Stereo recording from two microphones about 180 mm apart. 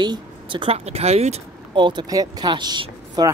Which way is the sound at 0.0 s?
25° right (ahead or behind).